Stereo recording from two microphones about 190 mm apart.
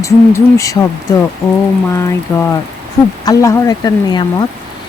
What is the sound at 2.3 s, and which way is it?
A woman's voice, 15° left (ahead or behind).